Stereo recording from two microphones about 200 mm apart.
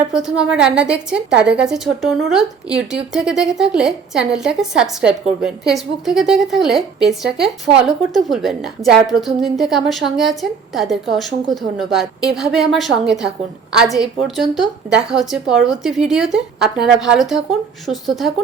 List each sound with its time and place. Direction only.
0.1 s a woman's voice: 5° right (ahead or behind)